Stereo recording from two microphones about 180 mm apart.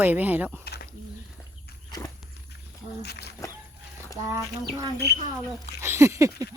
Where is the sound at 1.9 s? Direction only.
20° left (ahead or behind).